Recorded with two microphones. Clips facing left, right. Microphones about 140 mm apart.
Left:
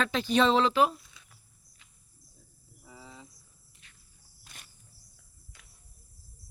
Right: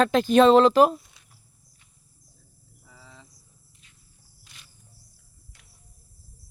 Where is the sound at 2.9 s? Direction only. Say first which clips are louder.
Left 3 dB; 10° left (ahead or behind).